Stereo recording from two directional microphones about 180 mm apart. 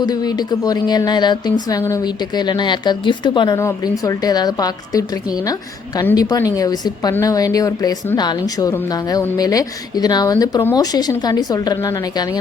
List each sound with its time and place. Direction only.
0.0 s a woman's voice: 20° left (ahead or behind)